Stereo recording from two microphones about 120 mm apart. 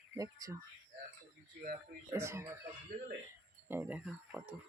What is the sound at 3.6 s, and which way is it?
Speech, 20° right (ahead or behind).